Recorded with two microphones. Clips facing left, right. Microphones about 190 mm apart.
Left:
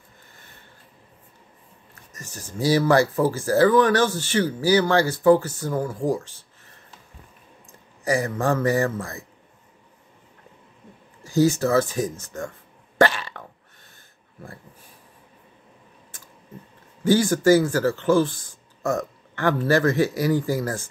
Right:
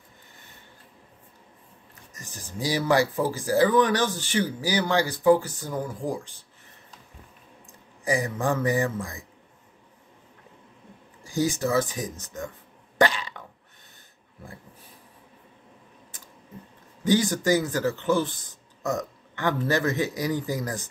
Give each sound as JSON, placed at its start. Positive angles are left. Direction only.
{"t": 2.1, "sound": "speech", "side_deg": -15}
{"t": 8.1, "sound": "speech", "side_deg": -15}
{"t": 11.2, "sound": "speech", "side_deg": -15}
{"t": 12.9, "sound": "cough", "side_deg": -15}
{"t": 17.0, "sound": "speech", "side_deg": -20}